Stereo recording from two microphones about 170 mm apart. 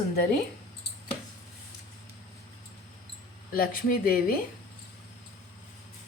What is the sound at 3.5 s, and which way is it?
Speech, 55° left (ahead or behind).